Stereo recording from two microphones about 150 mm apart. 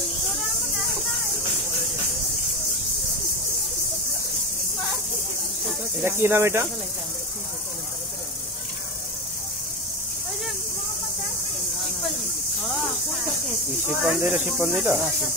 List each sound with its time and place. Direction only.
6.0 s speech: 15° right (ahead or behind)
14.0 s speech: 10° right (ahead or behind)